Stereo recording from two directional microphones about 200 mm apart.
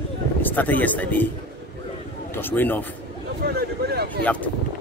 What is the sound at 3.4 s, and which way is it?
Speech, 50° right (ahead or behind).